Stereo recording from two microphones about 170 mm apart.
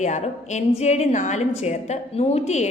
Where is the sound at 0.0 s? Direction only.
45° left (ahead or behind).